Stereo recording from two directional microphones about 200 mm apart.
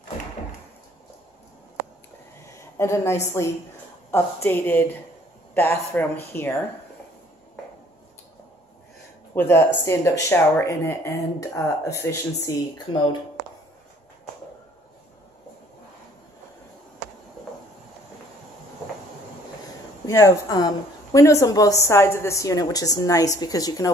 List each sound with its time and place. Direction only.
2.4 s a woman's voice: 15° left (ahead or behind)
9.3 s a woman's voice: 10° left (ahead or behind)
20.1 s a woman's voice: 15° left (ahead or behind)